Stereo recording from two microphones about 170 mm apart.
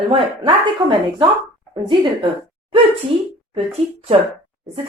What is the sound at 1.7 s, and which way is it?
Speech, 25° right (ahead or behind).